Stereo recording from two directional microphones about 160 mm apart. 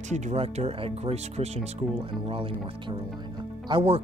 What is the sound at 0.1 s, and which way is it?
Speech, 45° right (ahead or behind).